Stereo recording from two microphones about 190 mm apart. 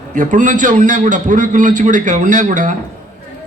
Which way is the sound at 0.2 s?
40° right (ahead or behind).